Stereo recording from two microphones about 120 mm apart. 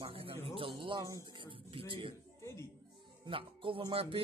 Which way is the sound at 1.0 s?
30° right (ahead or behind).